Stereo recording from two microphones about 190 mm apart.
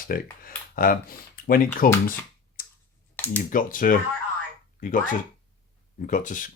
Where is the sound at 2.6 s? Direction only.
45° left (ahead or behind).